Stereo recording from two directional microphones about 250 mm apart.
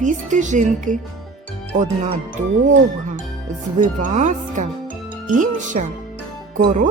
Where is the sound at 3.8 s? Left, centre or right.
Right.